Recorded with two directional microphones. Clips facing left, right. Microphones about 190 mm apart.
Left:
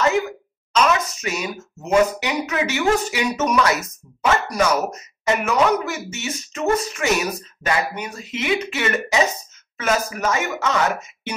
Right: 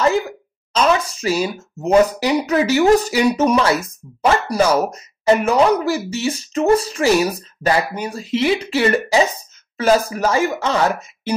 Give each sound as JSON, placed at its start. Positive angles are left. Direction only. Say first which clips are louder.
{"t": 0.7, "sound": "speech", "louder": "right 2 dB", "side_deg": -30}